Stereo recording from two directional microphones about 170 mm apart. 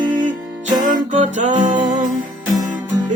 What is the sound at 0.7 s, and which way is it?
Music, 50° right (ahead or behind).